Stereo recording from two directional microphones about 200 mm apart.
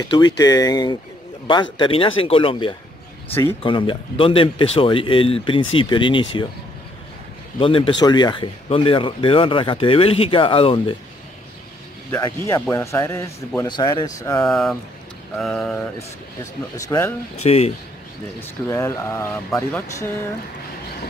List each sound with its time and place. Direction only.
0.4 s speech: 20° left (ahead or behind)
7.5 s speech: 25° left (ahead or behind)
12.1 s speech: 15° left (ahead or behind)
14.4 s a sound: centre (ahead or behind)
16.7 s speech: 15° left (ahead or behind)
17.4 s speech: 30° left (ahead or behind)
18.4 s speech: 15° left (ahead or behind)